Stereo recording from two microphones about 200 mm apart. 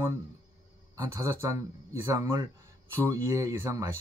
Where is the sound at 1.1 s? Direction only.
15° right (ahead or behind).